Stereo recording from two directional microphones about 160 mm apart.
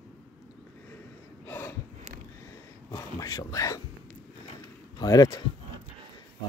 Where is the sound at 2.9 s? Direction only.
20° left (ahead or behind).